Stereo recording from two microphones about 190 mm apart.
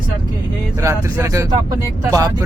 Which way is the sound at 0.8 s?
15° right (ahead or behind).